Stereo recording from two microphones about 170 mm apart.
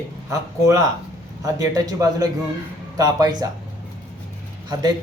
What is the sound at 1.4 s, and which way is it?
A man's voice, 20° right (ahead or behind).